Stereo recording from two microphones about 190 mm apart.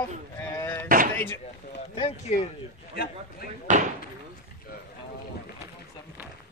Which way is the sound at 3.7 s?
40° right (ahead or behind).